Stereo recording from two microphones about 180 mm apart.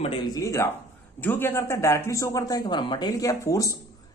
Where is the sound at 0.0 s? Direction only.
25° left (ahead or behind).